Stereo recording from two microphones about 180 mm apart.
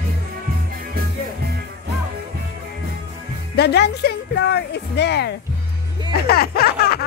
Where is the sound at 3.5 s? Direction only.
65° left (ahead or behind).